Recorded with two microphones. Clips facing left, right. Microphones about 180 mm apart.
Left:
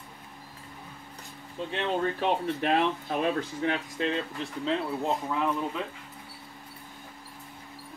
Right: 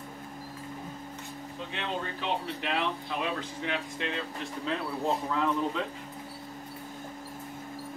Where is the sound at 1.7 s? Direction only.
50° left (ahead or behind).